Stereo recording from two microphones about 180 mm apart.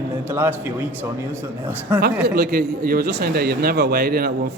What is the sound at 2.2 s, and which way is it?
A man's voice, 60° right (ahead or behind).